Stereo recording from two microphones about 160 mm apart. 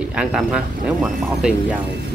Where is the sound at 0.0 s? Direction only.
5° right (ahead or behind).